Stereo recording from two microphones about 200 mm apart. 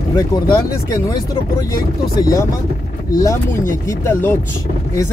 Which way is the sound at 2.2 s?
15° left (ahead or behind).